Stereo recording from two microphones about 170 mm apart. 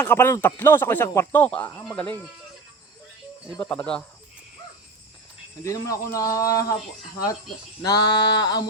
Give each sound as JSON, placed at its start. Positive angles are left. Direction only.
{"t": 0.0, "sound": "speech", "side_deg": 15}
{"t": 3.6, "sound": "speech", "side_deg": 10}
{"t": 5.6, "sound": "speech", "side_deg": 20}
{"t": 7.8, "sound": "speech", "side_deg": 20}